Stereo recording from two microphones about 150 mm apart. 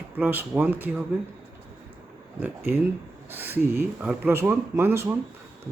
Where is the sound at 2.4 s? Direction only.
15° right (ahead or behind).